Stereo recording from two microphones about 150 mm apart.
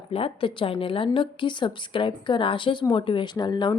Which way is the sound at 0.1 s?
40° left (ahead or behind).